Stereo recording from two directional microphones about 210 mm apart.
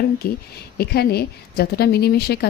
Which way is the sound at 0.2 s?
50° left (ahead or behind).